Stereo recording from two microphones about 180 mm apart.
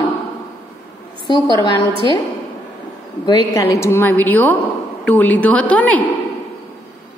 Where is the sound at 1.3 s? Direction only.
25° left (ahead or behind).